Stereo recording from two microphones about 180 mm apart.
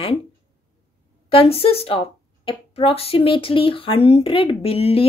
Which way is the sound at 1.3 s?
30° left (ahead or behind).